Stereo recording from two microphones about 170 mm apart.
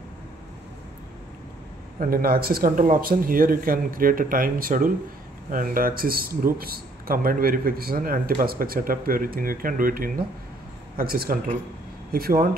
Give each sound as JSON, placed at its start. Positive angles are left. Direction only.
{"t": 2.0, "sound": "speech", "side_deg": -60}